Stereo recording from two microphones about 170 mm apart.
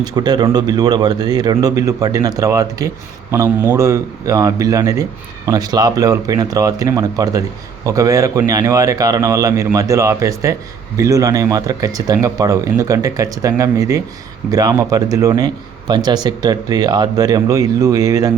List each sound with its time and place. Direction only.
0.0 s speech: 25° right (ahead or behind)